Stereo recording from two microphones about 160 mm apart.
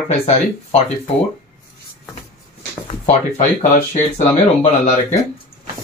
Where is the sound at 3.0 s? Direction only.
45° left (ahead or behind).